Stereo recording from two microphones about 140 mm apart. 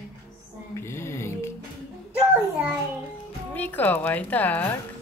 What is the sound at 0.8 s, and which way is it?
Music, 20° left (ahead or behind).